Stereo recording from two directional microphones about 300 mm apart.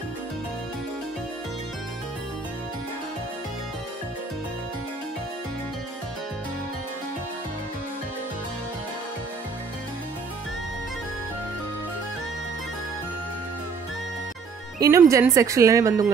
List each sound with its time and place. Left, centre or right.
14.8 s a woman's voice: centre